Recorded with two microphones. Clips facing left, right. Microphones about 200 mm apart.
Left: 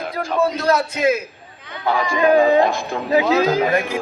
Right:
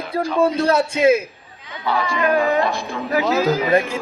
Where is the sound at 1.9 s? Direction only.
50° left (ahead or behind).